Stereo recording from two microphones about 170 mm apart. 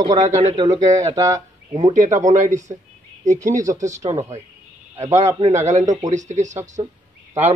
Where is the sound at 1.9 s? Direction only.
45° right (ahead or behind).